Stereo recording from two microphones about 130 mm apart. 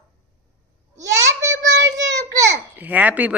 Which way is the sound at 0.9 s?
25° right (ahead or behind).